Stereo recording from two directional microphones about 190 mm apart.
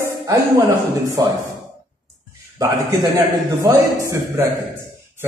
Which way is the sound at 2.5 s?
20° right (ahead or behind).